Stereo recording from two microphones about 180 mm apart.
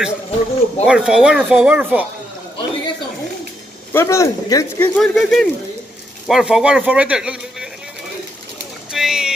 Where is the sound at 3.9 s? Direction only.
15° left (ahead or behind).